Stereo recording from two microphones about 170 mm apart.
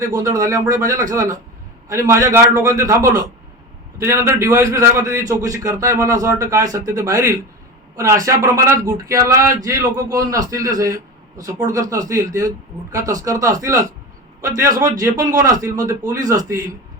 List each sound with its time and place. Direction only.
0.0 s a man's voice: 20° right (ahead or behind)